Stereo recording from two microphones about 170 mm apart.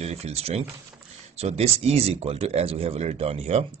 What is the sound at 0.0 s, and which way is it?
Speech, 40° right (ahead or behind).